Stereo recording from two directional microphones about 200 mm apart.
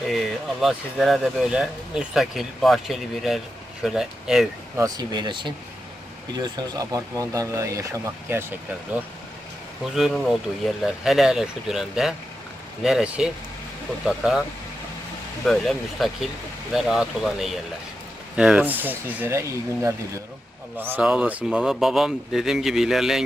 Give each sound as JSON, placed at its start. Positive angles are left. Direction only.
{"t": 0.1, "sound": "speech", "side_deg": 0}
{"t": 4.8, "sound": "speech", "side_deg": -20}
{"t": 15.4, "sound": "speech", "side_deg": 0}